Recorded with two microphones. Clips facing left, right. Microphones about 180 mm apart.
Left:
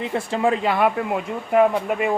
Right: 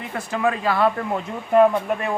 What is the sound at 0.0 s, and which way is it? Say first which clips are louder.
Speech: left 2 dB; 25° left (ahead or behind).